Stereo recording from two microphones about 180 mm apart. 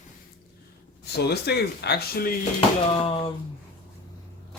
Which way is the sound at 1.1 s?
65° left (ahead or behind).